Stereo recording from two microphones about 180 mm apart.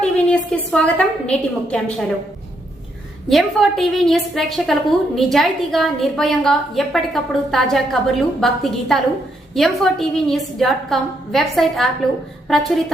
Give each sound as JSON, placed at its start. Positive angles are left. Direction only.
{"t": 0.0, "sound": "a woman's voice", "side_deg": 5}
{"t": 3.2, "sound": "a woman's voice", "side_deg": 0}